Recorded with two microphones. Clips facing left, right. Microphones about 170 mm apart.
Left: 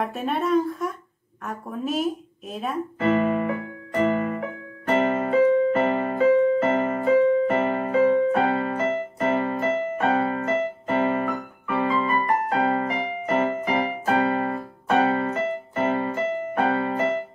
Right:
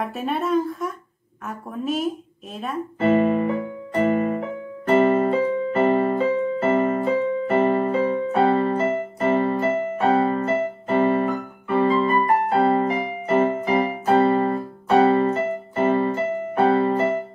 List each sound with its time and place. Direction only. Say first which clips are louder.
0.0 s speech: even; centre (ahead or behind)
3.0 s music: right 4 dB; 35° right (ahead or behind)
4.8 s keyboard: right 5 dB; 35° right (ahead or behind)
16.5 s music: right 6 dB; 35° right (ahead or behind)